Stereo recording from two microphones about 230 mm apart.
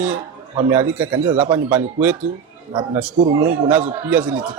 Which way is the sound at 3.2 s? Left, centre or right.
Right.